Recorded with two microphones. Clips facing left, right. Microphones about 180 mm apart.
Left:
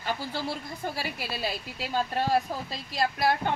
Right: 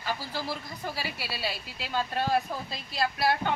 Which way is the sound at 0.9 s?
50° left (ahead or behind).